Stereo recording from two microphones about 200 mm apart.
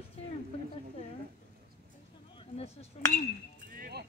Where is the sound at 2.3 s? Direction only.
30° left (ahead or behind).